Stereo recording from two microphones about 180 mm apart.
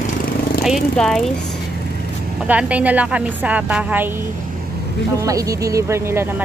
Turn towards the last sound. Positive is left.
turn(degrees=-15)  # may be behind; listen again after turning